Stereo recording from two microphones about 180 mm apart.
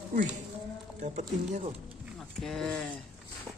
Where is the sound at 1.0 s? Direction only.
40° right (ahead or behind).